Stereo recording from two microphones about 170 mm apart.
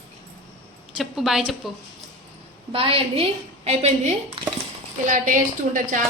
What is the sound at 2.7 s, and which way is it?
A woman's voice, 35° right (ahead or behind).